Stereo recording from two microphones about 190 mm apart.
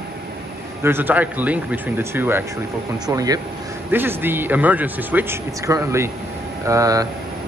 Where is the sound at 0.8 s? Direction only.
10° right (ahead or behind).